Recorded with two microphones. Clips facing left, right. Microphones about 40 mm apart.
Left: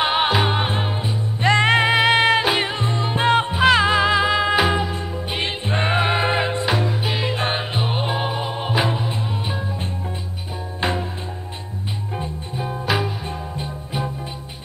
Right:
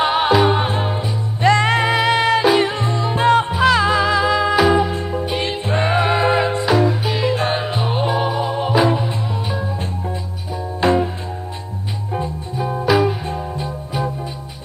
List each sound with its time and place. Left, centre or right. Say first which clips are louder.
0.0 s music: right 4 dB; centre
12.9 s music: right 7 dB; left